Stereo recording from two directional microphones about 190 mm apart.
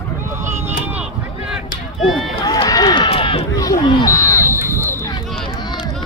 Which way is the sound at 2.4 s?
20° left (ahead or behind).